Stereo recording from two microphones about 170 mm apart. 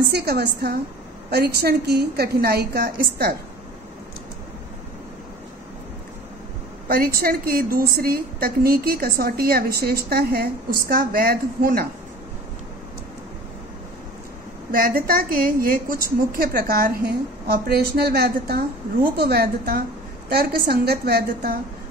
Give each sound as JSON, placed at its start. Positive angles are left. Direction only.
{"t": 0.1, "sound": "a woman's voice", "side_deg": -70}
{"t": 6.9, "sound": "a woman's voice", "side_deg": -60}
{"t": 14.7, "sound": "a woman's voice", "side_deg": -60}